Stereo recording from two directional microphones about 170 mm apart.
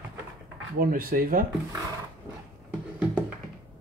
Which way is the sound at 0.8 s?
60° right (ahead or behind).